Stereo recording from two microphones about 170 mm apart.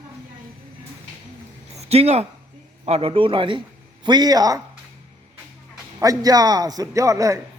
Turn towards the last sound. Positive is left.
turn(degrees=-20)  # may be behind; listen again after turning